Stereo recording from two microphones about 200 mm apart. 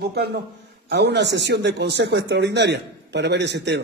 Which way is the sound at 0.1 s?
55° right (ahead or behind).